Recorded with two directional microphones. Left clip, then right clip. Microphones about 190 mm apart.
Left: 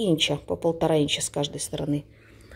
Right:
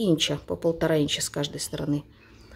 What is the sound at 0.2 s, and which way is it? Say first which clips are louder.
Speech: left 2 dB; 5° right (ahead or behind).